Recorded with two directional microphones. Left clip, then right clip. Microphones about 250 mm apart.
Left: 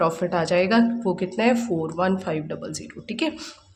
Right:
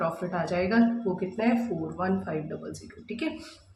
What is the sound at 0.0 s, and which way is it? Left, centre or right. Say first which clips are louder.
Speech: left 7 dB; left.